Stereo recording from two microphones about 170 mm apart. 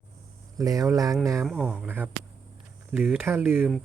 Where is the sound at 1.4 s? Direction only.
5° right (ahead or behind).